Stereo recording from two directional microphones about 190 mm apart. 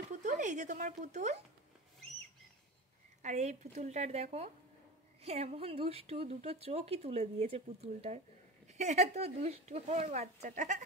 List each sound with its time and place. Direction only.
0.1 s speech: 40° right (ahead or behind)
3.2 s speech: 40° right (ahead or behind)